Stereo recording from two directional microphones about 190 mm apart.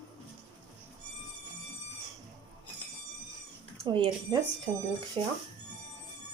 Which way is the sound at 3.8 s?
25° right (ahead or behind).